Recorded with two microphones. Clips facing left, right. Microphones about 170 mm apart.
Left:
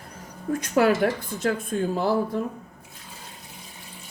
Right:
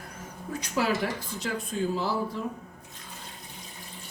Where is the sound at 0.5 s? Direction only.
50° left (ahead or behind).